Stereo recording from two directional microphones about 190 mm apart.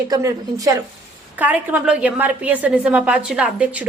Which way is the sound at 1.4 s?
5° right (ahead or behind).